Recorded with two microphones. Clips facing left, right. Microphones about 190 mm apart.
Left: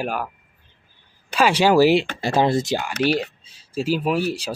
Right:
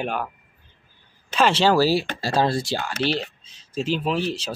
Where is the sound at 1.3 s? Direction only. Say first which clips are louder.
Left 2 dB; 10° left (ahead or behind).